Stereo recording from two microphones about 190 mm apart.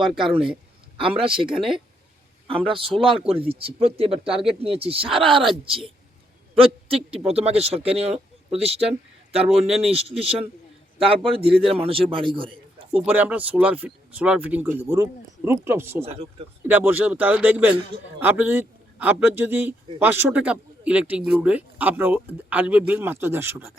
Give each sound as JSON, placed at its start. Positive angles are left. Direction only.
{"t": 0.9, "sound": "a man's voice", "side_deg": -30}
{"t": 13.1, "sound": "speech", "side_deg": -10}
{"t": 16.0, "sound": "speech", "side_deg": -30}
{"t": 16.6, "sound": "a man's voice", "side_deg": -10}